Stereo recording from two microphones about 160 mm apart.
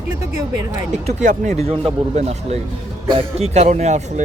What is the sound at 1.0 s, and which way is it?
Speech, 50° right (ahead or behind).